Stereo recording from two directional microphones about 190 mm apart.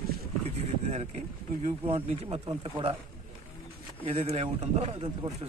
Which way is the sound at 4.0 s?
30° right (ahead or behind).